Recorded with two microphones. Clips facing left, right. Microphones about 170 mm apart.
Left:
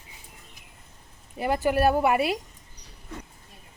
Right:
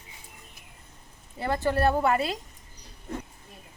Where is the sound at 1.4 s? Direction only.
15° left (ahead or behind).